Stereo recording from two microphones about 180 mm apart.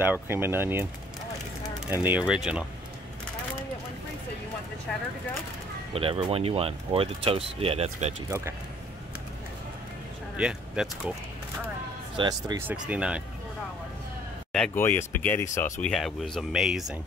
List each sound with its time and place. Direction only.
0.0 s speech: 10° right (ahead or behind)
1.9 s speech: 10° right (ahead or behind)
5.9 s speech: 30° right (ahead or behind)
10.3 s speech: 5° right (ahead or behind)
12.2 s speech: 20° right (ahead or behind)
12.6 s speech: 5° right (ahead or behind)
14.5 s speech: 10° left (ahead or behind)
15.9 s speech: centre (ahead or behind)